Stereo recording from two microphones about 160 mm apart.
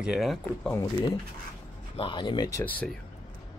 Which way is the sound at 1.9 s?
30° left (ahead or behind).